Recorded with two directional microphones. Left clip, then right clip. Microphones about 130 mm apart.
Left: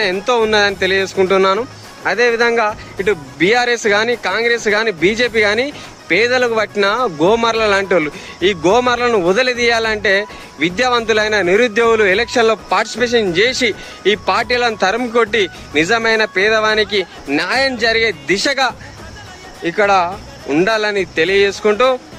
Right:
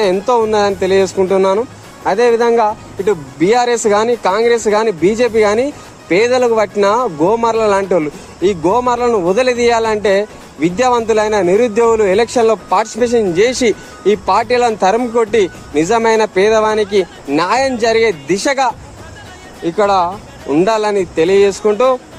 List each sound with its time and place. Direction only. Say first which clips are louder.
0.0 s a man's voice: right 2 dB; 20° left (ahead or behind)